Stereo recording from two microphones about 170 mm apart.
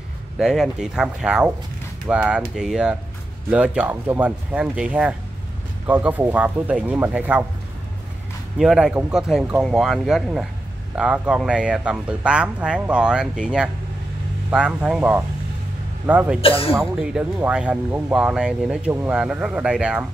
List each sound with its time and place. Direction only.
0.4 s speech: centre (ahead or behind)
8.5 s speech: centre (ahead or behind)
16.3 s speech: 35° left (ahead or behind)
16.8 s speech: 5° right (ahead or behind)